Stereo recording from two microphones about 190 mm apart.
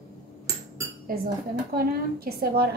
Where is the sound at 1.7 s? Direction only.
55° right (ahead or behind).